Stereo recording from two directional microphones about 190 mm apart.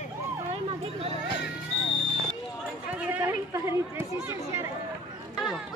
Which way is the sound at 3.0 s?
10° right (ahead or behind).